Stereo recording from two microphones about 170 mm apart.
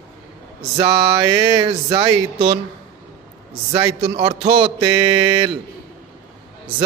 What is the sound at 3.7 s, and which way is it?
Speech, 35° right (ahead or behind).